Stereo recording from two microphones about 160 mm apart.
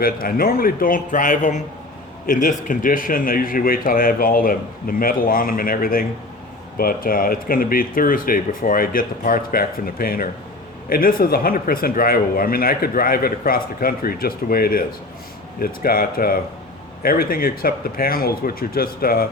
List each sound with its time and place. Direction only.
0.0 s a man's voice: 65° left (ahead or behind)